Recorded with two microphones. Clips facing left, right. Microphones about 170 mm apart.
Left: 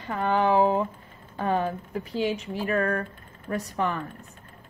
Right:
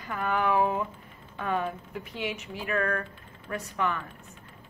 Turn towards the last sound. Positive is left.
turn(degrees=35)  # may be behind; listen again after turning